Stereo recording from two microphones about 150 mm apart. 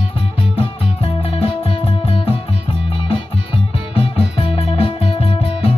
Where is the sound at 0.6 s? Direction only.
40° left (ahead or behind).